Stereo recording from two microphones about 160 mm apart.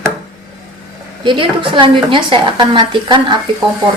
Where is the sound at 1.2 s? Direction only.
30° right (ahead or behind).